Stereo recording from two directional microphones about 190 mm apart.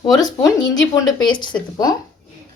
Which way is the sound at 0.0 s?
20° left (ahead or behind).